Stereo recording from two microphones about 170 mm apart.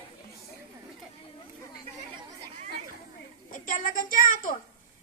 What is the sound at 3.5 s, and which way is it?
A woman's voice, 50° left (ahead or behind).